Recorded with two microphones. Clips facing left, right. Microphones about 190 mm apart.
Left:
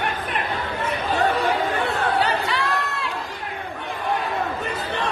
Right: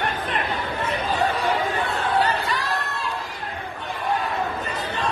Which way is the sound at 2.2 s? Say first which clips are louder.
Even; 70° left (ahead or behind).